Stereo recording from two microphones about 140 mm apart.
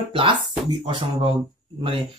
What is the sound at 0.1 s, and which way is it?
Speech, 35° right (ahead or behind).